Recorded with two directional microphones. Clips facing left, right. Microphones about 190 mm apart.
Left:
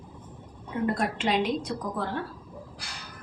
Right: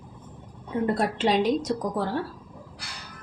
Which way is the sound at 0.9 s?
35° right (ahead or behind).